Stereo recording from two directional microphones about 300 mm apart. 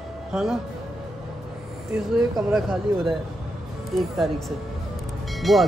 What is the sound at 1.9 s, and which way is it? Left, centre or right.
Speech, centre.